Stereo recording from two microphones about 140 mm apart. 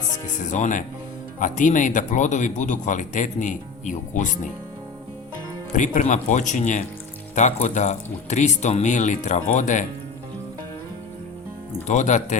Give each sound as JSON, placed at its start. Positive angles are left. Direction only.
{"t": 0.5, "sound": "speech", "side_deg": 65}
{"t": 5.7, "sound": "speech", "side_deg": 65}
{"t": 11.9, "sound": "speech", "side_deg": 60}